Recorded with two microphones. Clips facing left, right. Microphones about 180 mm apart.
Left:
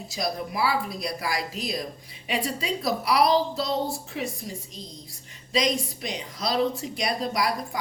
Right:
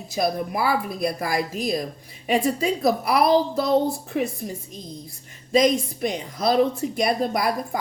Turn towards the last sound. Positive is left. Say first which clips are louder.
# right 3 dB
turn(degrees=-50)  # may be behind; listen again after turning